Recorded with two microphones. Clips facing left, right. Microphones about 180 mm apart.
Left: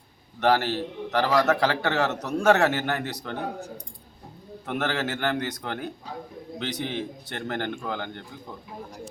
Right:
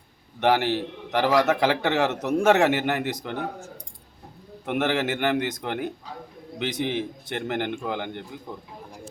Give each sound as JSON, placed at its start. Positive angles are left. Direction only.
{"t": 0.3, "sound": "a man's voice", "side_deg": -15}
{"t": 4.6, "sound": "a man's voice", "side_deg": -15}